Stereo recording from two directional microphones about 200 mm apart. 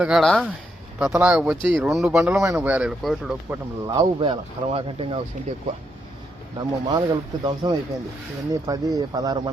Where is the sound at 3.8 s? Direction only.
20° right (ahead or behind).